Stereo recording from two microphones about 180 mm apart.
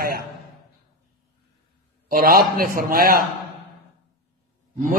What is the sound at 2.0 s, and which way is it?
A man's voice, 55° right (ahead or behind).